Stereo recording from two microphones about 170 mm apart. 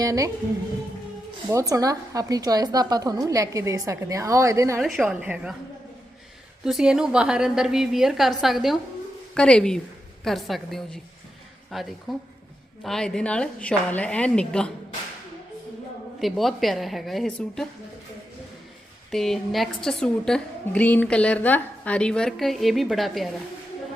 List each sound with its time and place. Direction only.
0.0 s a woman's voice: 20° right (ahead or behind)
1.5 s a woman's voice: 20° right (ahead or behind)
4.8 s a woman's voice: centre (ahead or behind)
6.7 s a woman's voice: 5° right (ahead or behind)
16.2 s a woman's voice: centre (ahead or behind)
19.1 s a woman's voice: centre (ahead or behind)